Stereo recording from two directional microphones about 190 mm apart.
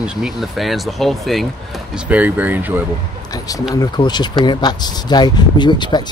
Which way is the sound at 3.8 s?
20° left (ahead or behind).